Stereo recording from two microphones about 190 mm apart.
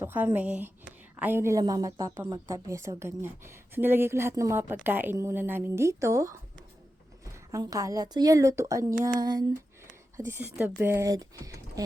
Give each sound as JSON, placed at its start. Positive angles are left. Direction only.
{"t": 0.0, "sound": "a woman's voice", "side_deg": -10}
{"t": 7.5, "sound": "a woman's voice", "side_deg": -15}
{"t": 9.2, "sound": "a sound", "side_deg": -20}
{"t": 10.2, "sound": "a woman's voice", "side_deg": -10}